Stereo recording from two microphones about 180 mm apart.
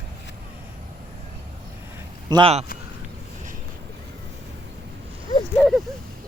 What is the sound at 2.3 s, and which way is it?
Speech, 30° right (ahead or behind).